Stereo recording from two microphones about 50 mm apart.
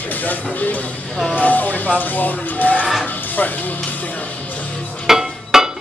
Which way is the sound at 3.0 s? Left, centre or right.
Left.